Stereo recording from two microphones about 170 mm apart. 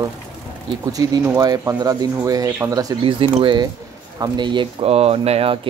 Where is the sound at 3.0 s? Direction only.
30° right (ahead or behind).